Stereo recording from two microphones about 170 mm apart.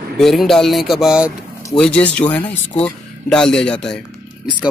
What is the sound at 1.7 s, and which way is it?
Speech, 10° left (ahead or behind).